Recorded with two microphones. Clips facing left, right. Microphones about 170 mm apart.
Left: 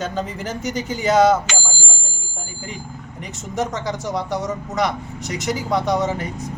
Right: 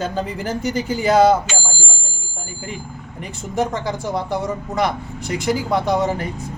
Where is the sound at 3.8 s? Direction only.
5° right (ahead or behind).